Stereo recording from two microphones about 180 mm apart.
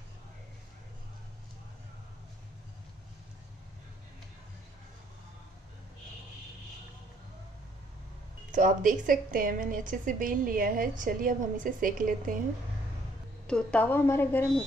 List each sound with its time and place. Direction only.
8.5 s a woman's voice: 50° right (ahead or behind)
13.5 s a woman's voice: 5° left (ahead or behind)